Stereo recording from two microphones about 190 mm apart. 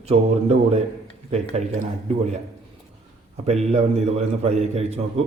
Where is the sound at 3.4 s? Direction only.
35° right (ahead or behind).